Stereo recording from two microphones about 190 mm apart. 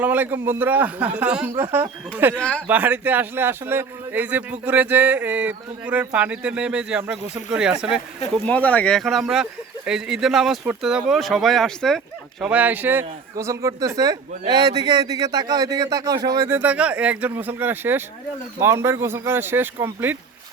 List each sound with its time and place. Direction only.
0.0 s speech: 10° right (ahead or behind)
2.3 s speech: 5° left (ahead or behind)
2.6 s speech: 10° right (ahead or behind)
8.4 s speech: 5° left (ahead or behind); by 20.1 s 10° right (ahead or behind)